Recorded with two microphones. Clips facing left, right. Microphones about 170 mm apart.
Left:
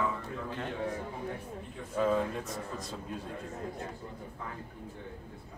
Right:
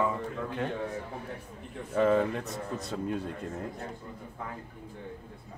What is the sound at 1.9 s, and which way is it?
Speech, 65° right (ahead or behind).